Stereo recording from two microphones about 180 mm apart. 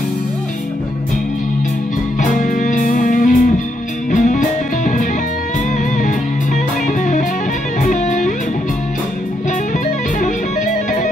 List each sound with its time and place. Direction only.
2.4 s music: 45° left (ahead or behind)
6.9 s music: 45° left (ahead or behind)